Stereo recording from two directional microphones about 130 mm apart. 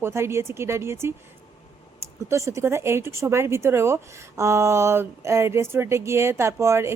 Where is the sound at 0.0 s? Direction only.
20° right (ahead or behind).